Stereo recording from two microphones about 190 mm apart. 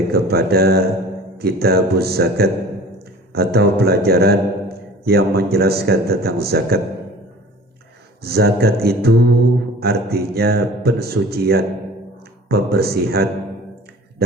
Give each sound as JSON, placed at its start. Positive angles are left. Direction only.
{"t": 0.1, "sound": "a man's voice", "side_deg": -55}
{"t": 8.2, "sound": "a man's voice", "side_deg": -55}
{"t": 14.2, "sound": "a sound", "side_deg": -55}